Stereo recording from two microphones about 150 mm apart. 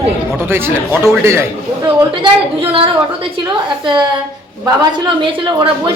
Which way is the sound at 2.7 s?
35° right (ahead or behind).